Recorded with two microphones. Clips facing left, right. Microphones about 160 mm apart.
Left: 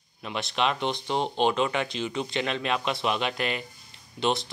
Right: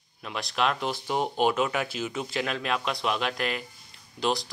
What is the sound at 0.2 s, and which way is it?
Speech, centre (ahead or behind).